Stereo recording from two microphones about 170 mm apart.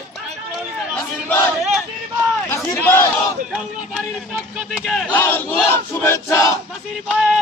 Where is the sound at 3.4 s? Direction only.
Centre (ahead or behind).